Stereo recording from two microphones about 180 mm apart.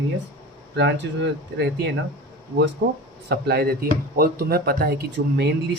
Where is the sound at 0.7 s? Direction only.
70° right (ahead or behind).